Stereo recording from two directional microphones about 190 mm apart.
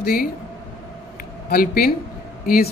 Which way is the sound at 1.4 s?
50° left (ahead or behind).